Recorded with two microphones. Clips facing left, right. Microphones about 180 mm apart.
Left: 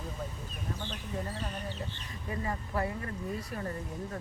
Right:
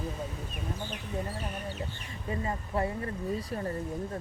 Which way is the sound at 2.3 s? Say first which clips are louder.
Right 2 dB; 25° right (ahead or behind).